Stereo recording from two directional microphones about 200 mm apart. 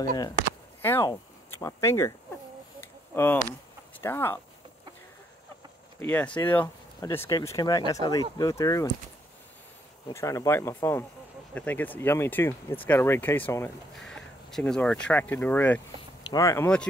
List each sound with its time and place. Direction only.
0.8 s speech: 10° left (ahead or behind)
2.8 s a sound: 10° left (ahead or behind)
4.0 s speech: 10° left (ahead or behind)
5.9 s speech: 10° left (ahead or behind)
10.0 s speech: 15° left (ahead or behind)
13.9 s speech: centre (ahead or behind)